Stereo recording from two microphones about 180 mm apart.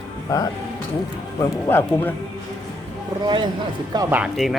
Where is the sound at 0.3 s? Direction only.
20° left (ahead or behind).